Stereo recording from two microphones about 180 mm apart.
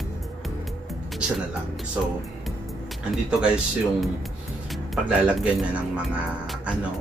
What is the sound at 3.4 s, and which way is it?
Speech, 5° right (ahead or behind).